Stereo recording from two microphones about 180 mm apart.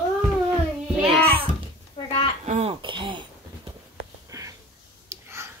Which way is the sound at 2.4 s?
35° right (ahead or behind).